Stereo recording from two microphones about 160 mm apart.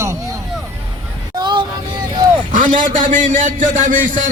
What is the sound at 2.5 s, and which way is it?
A man's voice, 55° right (ahead or behind).